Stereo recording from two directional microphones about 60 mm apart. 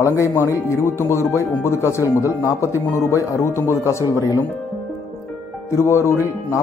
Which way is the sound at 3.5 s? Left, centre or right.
Left.